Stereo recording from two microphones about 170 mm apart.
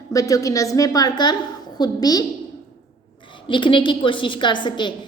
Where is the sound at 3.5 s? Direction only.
30° left (ahead or behind).